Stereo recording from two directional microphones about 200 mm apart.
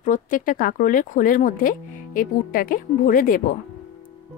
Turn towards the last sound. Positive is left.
turn(degrees=45)  # may be behind; listen again after turning